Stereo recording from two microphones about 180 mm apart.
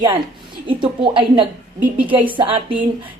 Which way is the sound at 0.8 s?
25° right (ahead or behind).